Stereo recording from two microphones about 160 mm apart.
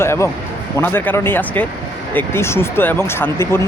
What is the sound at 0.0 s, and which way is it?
Speech, 15° left (ahead or behind).